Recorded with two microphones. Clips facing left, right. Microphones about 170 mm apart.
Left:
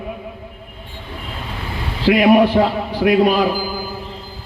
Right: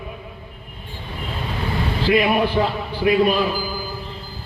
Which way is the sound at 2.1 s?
75° left (ahead or behind).